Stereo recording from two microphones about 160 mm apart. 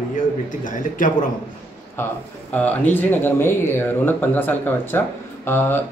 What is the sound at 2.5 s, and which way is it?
Speech, 10° left (ahead or behind).